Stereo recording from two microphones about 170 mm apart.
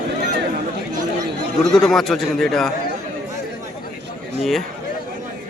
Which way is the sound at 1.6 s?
Centre (ahead or behind).